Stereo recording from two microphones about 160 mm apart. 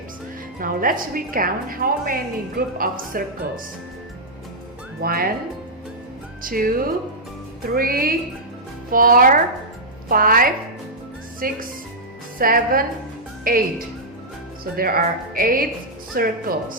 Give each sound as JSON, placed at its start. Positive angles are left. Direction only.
{"t": 0.6, "sound": "a woman's voice", "side_deg": -60}
{"t": 4.9, "sound": "speech", "side_deg": -70}
{"t": 6.4, "sound": "a woman's voice", "side_deg": -65}
{"t": 14.8, "sound": "a woman's voice", "side_deg": -65}